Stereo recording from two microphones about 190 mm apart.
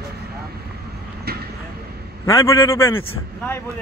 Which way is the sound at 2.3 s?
15° left (ahead or behind).